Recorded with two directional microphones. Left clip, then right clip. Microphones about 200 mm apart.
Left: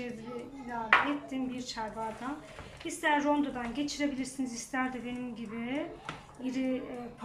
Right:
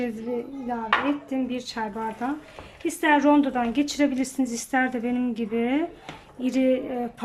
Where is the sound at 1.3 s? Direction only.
50° right (ahead or behind).